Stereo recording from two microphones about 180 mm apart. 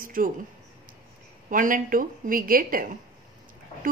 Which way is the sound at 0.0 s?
50° right (ahead or behind).